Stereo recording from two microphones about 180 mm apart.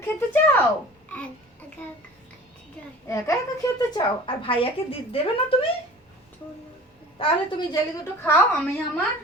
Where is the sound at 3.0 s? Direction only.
15° left (ahead or behind).